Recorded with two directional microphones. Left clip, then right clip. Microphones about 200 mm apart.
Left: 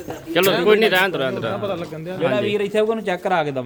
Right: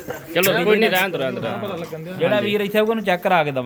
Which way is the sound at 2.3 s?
20° right (ahead or behind).